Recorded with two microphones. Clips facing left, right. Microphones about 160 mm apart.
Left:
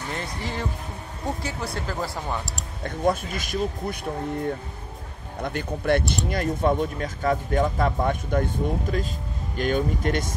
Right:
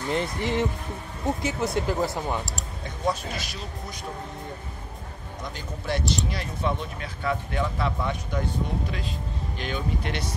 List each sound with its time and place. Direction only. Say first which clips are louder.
0.1 s speech: right 7 dB; 20° right (ahead or behind)
2.8 s speech: left 5 dB; 50° left (ahead or behind)
5.4 s speech: left 9 dB; 60° left (ahead or behind)